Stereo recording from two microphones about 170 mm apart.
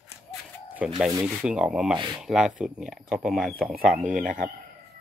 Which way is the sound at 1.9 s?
30° right (ahead or behind).